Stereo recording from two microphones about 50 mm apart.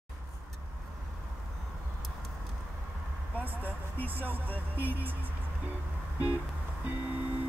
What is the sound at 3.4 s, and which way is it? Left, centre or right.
Music, right.